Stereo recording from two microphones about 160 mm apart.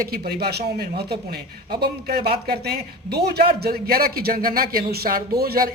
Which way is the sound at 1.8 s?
75° right (ahead or behind).